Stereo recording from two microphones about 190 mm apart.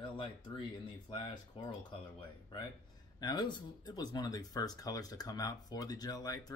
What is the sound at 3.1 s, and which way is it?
Speech, 20° left (ahead or behind).